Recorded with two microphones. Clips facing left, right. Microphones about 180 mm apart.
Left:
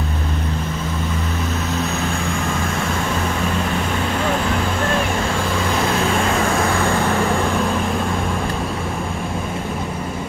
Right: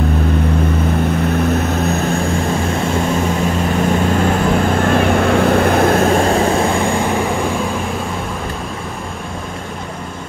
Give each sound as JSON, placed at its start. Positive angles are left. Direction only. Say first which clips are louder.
{"t": 5.2, "sound": "vehicle", "louder": "right 9 dB", "side_deg": -60}